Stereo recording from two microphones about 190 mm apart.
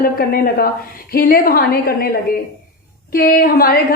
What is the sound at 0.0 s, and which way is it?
A woman's voice, 50° left (ahead or behind).